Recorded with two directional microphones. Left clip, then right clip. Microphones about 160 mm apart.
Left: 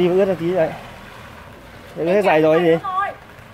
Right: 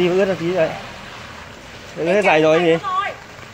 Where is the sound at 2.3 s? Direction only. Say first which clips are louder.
Even; 25° left (ahead or behind).